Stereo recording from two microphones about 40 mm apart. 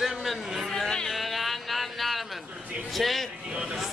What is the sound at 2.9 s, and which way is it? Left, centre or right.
Speech, centre.